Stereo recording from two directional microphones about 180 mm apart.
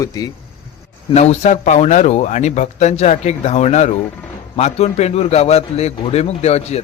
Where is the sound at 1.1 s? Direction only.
40° left (ahead or behind).